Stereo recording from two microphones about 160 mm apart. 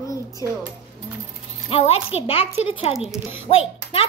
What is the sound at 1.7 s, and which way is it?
A child's voice, 40° left (ahead or behind).